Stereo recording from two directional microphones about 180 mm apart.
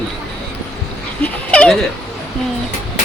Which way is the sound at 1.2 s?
5° left (ahead or behind).